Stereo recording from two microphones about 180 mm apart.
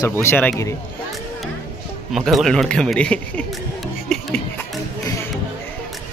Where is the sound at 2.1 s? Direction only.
Centre (ahead or behind).